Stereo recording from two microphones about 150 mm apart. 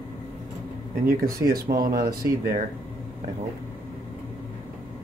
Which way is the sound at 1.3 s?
90° right.